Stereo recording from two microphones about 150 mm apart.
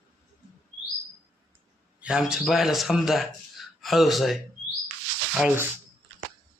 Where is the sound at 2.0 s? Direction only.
5° right (ahead or behind).